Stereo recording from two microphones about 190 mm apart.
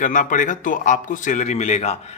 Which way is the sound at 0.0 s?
45° left (ahead or behind).